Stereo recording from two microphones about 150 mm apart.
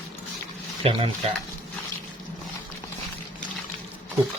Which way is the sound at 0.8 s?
40° right (ahead or behind).